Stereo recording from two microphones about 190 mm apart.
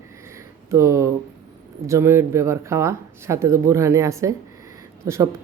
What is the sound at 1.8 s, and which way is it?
Speech, 15° right (ahead or behind).